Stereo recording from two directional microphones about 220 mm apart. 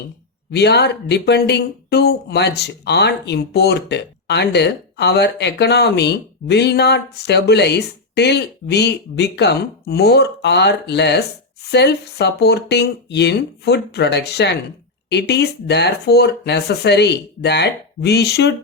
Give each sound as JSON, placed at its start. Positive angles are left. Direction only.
{"t": 0.5, "sound": "speech", "side_deg": 50}